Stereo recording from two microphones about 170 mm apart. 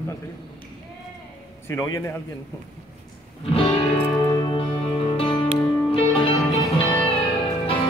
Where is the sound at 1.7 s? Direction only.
20° left (ahead or behind).